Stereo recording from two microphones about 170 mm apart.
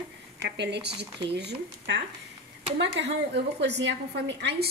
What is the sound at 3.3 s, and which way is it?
A woman's voice, 85° right.